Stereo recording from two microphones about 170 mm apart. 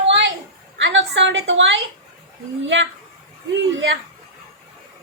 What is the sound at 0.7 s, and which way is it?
A woman's voice, 90° right.